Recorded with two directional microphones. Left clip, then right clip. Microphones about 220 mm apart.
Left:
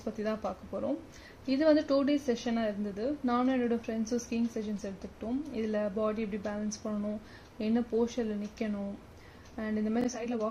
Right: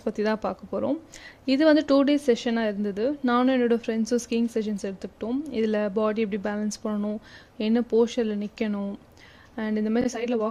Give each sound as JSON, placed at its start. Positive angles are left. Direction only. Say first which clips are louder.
{"t": 0.0, "sound": "speech", "louder": "right 8 dB", "side_deg": -45}